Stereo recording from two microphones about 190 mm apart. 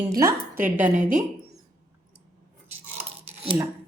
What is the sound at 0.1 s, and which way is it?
Speech, 20° right (ahead or behind).